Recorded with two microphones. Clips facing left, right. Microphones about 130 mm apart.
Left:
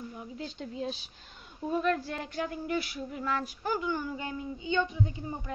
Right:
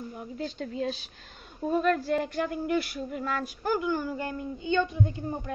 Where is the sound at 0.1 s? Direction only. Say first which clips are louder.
Right 5 dB; 5° right (ahead or behind).